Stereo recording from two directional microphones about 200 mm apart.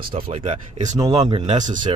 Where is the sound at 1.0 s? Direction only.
20° right (ahead or behind).